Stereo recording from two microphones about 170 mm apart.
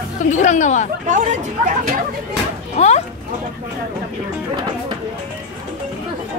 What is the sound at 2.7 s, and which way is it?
Speech, 40° left (ahead or behind).